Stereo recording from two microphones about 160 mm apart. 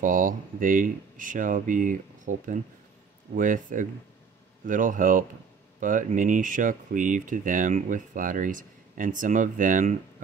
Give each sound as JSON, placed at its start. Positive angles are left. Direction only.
{"t": 0.0, "sound": "speech", "side_deg": -60}